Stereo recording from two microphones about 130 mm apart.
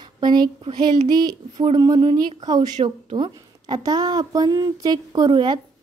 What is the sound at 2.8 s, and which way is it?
Speech, 45° right (ahead or behind).